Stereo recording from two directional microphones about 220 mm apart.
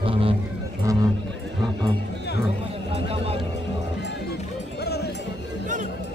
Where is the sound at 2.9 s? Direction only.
25° right (ahead or behind).